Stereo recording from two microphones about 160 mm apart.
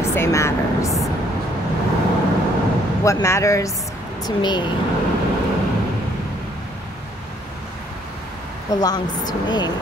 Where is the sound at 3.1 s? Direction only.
20° left (ahead or behind).